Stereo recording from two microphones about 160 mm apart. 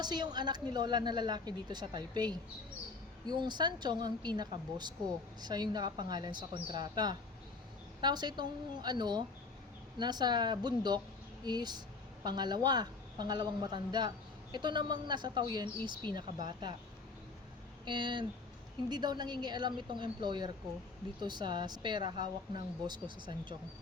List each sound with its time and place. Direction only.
0.0 s speech: 25° right (ahead or behind)
17.8 s speech: 30° right (ahead or behind)